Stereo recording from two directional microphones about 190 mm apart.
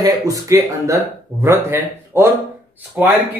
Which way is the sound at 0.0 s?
15° right (ahead or behind).